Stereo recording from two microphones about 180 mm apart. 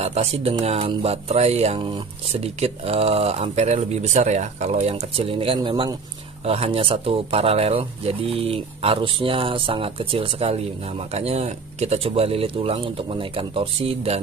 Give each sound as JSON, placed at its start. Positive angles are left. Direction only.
{"t": 0.0, "sound": "speech", "side_deg": -35}